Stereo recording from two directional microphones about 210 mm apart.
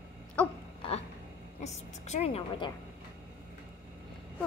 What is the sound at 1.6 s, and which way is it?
A woman's voice, 30° left (ahead or behind).